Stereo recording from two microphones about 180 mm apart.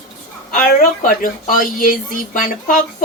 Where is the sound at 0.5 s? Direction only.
55° left (ahead or behind).